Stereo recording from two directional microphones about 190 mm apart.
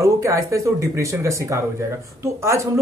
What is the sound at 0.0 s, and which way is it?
Speech, 15° right (ahead or behind).